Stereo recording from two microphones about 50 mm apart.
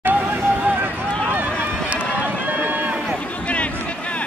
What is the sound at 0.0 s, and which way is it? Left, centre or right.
Vehicle, right.